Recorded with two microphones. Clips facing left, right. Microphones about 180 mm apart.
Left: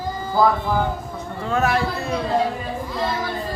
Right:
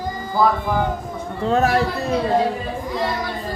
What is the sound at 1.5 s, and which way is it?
Speech, 35° right (ahead or behind).